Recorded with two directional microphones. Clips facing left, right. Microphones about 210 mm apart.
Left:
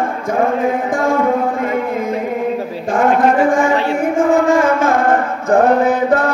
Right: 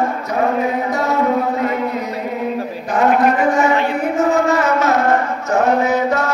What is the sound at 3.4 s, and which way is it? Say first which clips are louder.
Music: left 1 dB; 50° left (ahead or behind).